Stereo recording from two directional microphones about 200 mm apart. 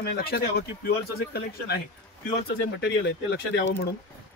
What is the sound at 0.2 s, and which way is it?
Speech, 50° left (ahead or behind).